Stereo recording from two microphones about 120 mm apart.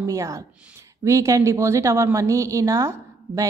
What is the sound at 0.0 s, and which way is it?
A woman's voice, 25° right (ahead or behind).